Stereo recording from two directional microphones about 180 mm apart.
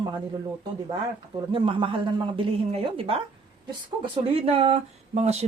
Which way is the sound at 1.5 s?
30° right (ahead or behind).